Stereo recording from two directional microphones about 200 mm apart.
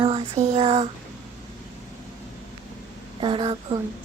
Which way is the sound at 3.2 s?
25° right (ahead or behind).